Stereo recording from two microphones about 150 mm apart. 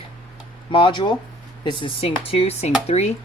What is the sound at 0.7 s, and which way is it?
Speech, 35° left (ahead or behind).